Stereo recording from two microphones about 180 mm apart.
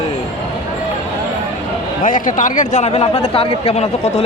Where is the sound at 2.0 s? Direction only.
45° left (ahead or behind).